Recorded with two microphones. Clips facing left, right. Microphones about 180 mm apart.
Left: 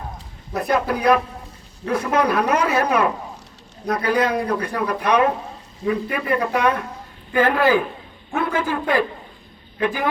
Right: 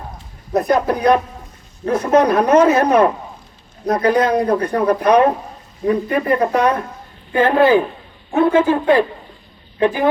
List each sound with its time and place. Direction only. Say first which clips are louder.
0.5 s a man's voice: right 5 dB; 35° right (ahead or behind)
9.8 s a man's voice: right 6 dB; 25° right (ahead or behind)